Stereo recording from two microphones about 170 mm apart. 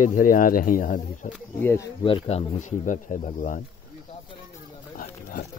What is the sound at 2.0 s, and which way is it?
Speech, 35° left (ahead or behind).